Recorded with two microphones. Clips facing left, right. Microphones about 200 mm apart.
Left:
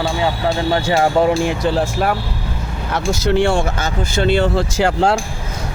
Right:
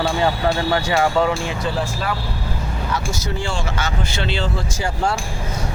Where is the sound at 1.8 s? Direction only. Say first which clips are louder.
Left 6 dB; 55° left (ahead or behind); by 5.1 s 75° left (ahead or behind).